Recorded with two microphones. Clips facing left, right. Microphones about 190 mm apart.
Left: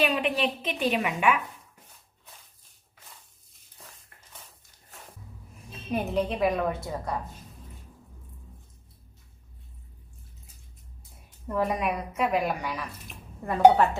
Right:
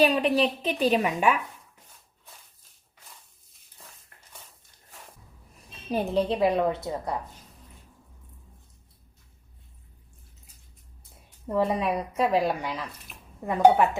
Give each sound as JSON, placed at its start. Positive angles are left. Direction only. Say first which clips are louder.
{"t": 0.0, "sound": "a woman's voice", "louder": "right 4 dB", "side_deg": -35}
{"t": 5.9, "sound": "a woman's voice", "louder": "right 2 dB", "side_deg": -30}
{"t": 11.4, "sound": "a woman's voice", "louder": "right 2 dB", "side_deg": -25}